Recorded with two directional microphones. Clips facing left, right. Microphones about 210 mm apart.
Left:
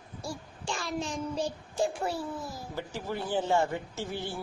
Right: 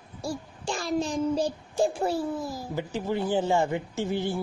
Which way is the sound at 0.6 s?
35° right (ahead or behind).